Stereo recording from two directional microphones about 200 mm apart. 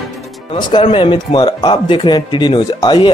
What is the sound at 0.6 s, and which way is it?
Speech, 25° left (ahead or behind).